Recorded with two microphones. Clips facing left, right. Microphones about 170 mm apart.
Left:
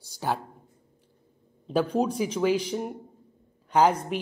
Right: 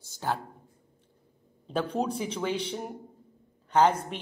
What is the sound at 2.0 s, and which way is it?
Speech, 30° right (ahead or behind).